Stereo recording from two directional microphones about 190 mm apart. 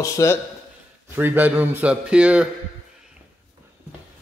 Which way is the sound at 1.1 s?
10° right (ahead or behind).